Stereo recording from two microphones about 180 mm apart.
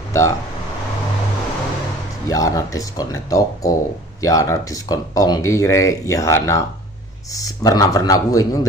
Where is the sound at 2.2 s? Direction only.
20° left (ahead or behind).